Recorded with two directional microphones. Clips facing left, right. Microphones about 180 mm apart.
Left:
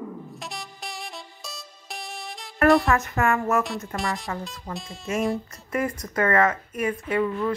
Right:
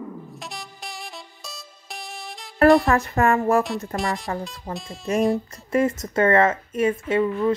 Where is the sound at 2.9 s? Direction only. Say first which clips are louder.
Right 3 dB; 35° right (ahead or behind).